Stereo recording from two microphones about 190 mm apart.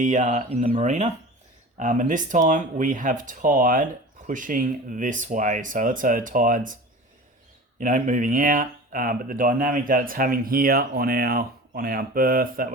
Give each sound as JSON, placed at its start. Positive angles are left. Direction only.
{"t": 0.0, "sound": "speech", "side_deg": -40}
{"t": 7.8, "sound": "speech", "side_deg": -45}